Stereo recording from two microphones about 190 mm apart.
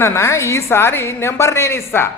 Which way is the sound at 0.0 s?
15° left (ahead or behind).